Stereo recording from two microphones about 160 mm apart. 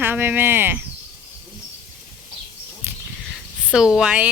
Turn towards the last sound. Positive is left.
turn(degrees=-5)  # may be behind; listen again after turning